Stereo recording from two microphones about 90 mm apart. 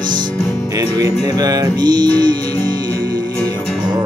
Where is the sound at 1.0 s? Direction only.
40° right (ahead or behind).